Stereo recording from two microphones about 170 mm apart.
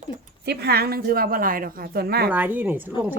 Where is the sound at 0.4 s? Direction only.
75° right (ahead or behind).